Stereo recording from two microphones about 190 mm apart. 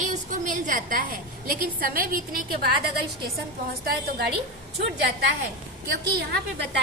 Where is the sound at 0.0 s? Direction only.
40° right (ahead or behind).